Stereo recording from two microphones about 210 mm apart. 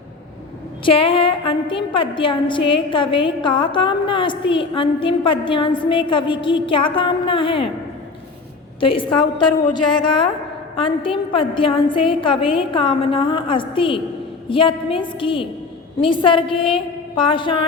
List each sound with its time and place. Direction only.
0.9 s a woman's voice: 25° left (ahead or behind)
8.8 s a woman's voice: 25° left (ahead or behind)